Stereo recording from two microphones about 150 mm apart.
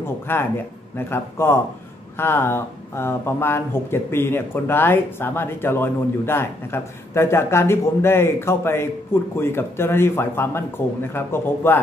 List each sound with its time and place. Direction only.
0.0 s a man's voice: 15° left (ahead or behind)